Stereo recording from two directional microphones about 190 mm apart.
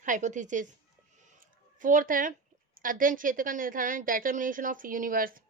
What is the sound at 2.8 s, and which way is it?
A woman's voice, 45° right (ahead or behind).